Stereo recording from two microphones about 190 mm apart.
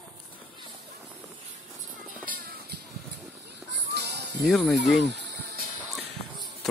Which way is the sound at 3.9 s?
60° right (ahead or behind).